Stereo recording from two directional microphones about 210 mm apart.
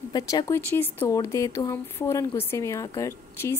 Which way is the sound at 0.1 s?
20° left (ahead or behind).